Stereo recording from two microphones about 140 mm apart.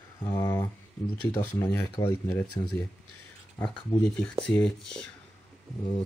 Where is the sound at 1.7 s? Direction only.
25° left (ahead or behind).